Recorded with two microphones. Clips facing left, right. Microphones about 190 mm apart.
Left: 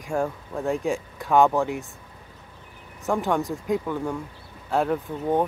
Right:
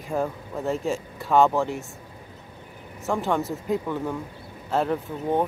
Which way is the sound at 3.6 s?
5° right (ahead or behind).